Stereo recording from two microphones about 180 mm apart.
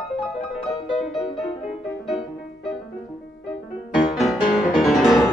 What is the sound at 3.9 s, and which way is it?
Music, centre (ahead or behind).